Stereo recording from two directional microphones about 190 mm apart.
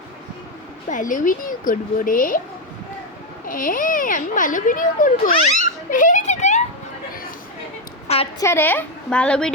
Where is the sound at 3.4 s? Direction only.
45° left (ahead or behind).